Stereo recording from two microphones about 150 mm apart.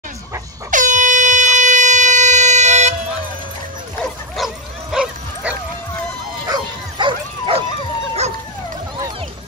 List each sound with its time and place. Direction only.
0.7 s air horn: 60° right (ahead or behind)
4.4 s bow-wow: centre (ahead or behind)
6.4 s bow-wow: 30° right (ahead or behind)